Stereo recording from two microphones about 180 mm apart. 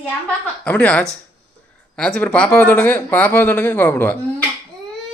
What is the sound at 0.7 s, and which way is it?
Speech, 5° left (ahead or behind).